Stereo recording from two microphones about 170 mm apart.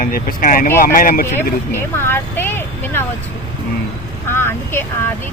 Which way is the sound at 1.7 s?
15° left (ahead or behind).